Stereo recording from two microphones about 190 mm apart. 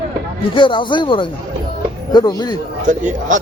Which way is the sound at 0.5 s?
25° left (ahead or behind).